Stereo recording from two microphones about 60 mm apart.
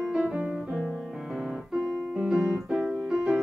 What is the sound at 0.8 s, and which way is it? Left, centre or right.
Music, centre.